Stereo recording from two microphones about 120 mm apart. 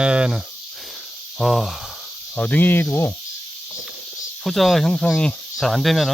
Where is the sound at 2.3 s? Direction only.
15° left (ahead or behind).